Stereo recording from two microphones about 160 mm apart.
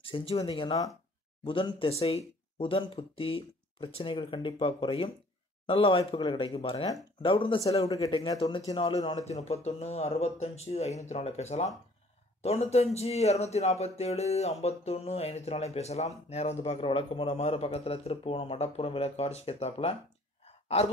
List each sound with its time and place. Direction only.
0.0 s speech: 35° left (ahead or behind)
7.6 s speech: 20° left (ahead or behind)
9.1 s speech: 45° left (ahead or behind)